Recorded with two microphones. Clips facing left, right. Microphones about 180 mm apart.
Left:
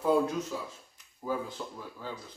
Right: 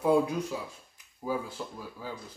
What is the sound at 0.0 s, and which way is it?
Speech, 10° right (ahead or behind).